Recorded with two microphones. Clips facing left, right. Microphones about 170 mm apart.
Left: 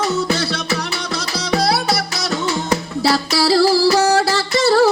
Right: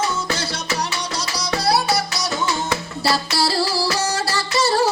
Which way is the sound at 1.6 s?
65° left (ahead or behind).